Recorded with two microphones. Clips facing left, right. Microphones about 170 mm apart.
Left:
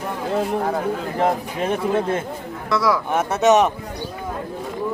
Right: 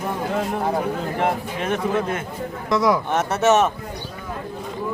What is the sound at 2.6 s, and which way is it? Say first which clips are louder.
Speech: right 1 dB; 20° right (ahead or behind).